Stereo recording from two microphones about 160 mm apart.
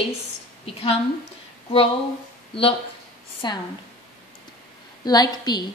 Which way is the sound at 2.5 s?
35° left (ahead or behind).